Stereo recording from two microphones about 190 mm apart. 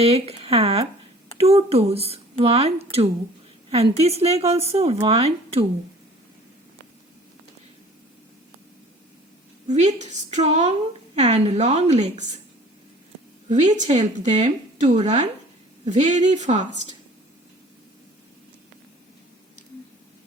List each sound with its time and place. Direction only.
0.0 s speech: 30° right (ahead or behind)
9.6 s speech: 35° right (ahead or behind)
13.5 s speech: 40° right (ahead or behind)